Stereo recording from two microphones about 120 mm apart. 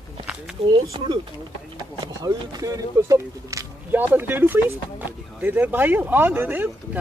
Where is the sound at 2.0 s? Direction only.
35° right (ahead or behind).